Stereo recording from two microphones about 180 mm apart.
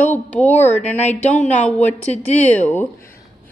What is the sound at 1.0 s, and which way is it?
Speech, 40° left (ahead or behind).